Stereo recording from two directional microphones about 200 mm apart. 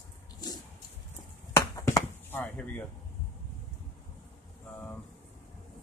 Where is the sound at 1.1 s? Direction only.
15° left (ahead or behind).